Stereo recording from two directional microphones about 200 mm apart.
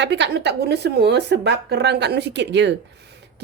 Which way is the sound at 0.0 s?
60° right (ahead or behind).